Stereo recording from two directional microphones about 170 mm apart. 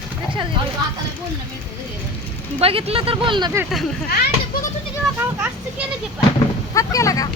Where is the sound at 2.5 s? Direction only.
35° right (ahead or behind).